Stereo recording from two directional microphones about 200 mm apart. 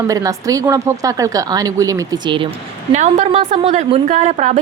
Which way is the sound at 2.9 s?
35° right (ahead or behind).